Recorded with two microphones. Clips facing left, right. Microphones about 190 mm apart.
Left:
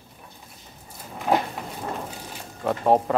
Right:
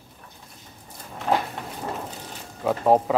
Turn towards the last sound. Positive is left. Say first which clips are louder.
# right 1 dB
turn(degrees=0)  # may be behind; listen again after turning